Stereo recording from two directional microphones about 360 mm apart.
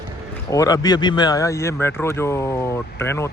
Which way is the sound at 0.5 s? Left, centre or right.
Centre.